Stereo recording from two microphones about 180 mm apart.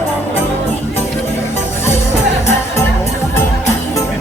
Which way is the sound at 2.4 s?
15° left (ahead or behind).